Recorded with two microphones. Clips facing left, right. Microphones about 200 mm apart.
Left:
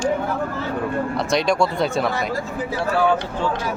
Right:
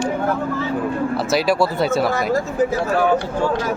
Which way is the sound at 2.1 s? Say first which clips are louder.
Right 5 dB; 45° right (ahead or behind).